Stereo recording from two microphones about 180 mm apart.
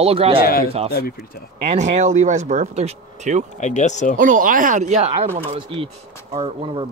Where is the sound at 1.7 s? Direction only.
40° right (ahead or behind).